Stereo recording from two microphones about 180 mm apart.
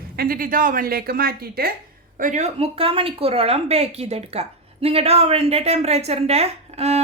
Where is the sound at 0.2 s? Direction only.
55° right (ahead or behind).